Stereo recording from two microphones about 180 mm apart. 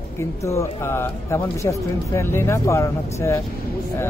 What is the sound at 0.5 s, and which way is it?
A man's voice, 15° left (ahead or behind).